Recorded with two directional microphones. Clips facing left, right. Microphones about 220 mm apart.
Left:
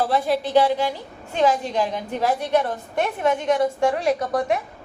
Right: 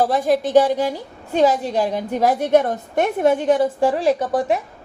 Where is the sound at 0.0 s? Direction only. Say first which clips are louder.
Right 4 dB; 45° right (ahead or behind).